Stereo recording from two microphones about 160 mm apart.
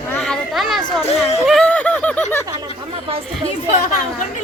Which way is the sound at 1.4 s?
5° left (ahead or behind).